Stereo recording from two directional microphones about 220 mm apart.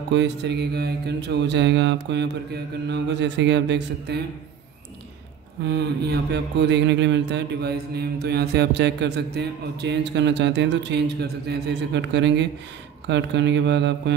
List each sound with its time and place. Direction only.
0.1 s mantra: 50° right (ahead or behind)
5.7 s mantra: 50° right (ahead or behind)